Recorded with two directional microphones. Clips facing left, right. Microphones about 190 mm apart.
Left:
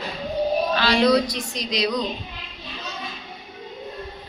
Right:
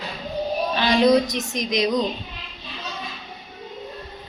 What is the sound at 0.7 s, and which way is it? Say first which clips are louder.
A woman's voice: right 3 dB; 20° right (ahead or behind).